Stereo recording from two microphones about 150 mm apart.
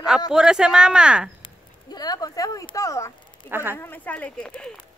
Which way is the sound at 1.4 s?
25° left (ahead or behind).